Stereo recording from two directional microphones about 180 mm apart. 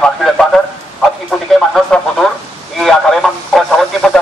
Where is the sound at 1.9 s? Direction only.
5° left (ahead or behind).